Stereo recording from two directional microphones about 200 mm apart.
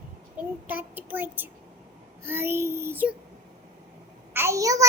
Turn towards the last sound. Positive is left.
turn(degrees=-15)  # may be behind; listen again after turning